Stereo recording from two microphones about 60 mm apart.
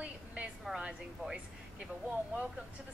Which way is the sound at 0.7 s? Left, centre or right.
Centre.